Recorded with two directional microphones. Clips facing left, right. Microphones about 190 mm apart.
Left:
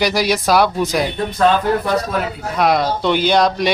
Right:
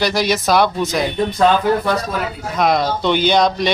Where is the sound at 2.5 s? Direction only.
5° left (ahead or behind).